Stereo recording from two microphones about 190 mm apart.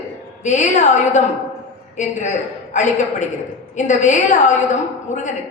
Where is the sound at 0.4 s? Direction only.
40° left (ahead or behind).